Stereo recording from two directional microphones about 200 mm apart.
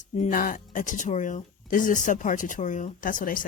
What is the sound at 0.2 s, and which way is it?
Speech, 45° left (ahead or behind).